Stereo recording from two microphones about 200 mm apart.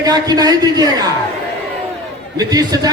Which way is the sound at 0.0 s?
20° right (ahead or behind).